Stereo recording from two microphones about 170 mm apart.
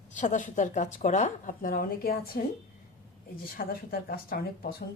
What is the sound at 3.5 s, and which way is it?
Speech, 60° left (ahead or behind).